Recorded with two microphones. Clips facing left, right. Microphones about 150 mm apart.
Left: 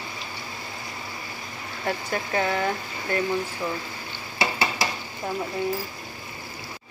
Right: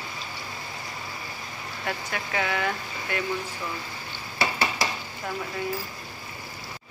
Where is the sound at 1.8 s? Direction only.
35° left (ahead or behind).